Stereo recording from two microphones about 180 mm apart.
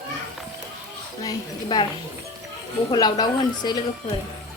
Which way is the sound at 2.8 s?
25° left (ahead or behind).